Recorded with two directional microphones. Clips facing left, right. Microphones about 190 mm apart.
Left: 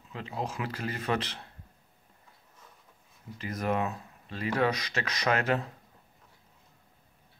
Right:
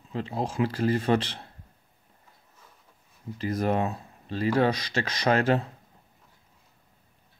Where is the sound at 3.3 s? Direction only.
35° right (ahead or behind).